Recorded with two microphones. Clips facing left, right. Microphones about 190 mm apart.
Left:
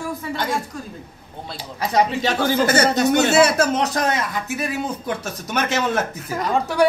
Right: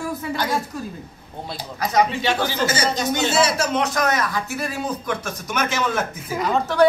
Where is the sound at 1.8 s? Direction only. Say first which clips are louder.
Left 1 dB; 30° left (ahead or behind).